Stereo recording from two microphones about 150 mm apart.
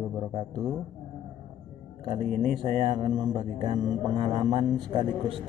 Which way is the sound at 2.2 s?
65° right (ahead or behind).